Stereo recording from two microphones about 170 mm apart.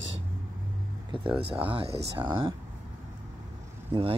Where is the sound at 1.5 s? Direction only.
10° right (ahead or behind).